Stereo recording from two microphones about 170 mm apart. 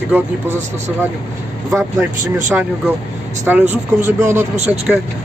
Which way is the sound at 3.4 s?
10° right (ahead or behind).